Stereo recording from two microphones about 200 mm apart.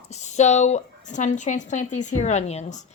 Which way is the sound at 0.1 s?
35° left (ahead or behind).